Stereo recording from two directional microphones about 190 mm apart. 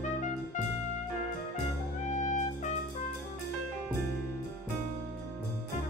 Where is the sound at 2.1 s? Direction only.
40° left (ahead or behind).